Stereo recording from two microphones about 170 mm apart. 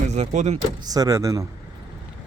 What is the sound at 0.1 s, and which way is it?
Speech, 40° right (ahead or behind).